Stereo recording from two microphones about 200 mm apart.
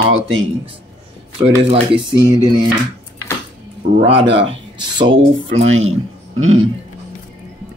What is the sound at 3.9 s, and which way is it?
Speech, 25° right (ahead or behind).